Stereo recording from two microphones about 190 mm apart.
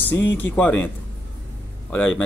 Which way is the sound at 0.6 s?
10° left (ahead or behind).